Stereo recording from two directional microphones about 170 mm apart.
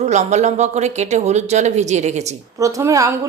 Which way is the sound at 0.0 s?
45° right (ahead or behind).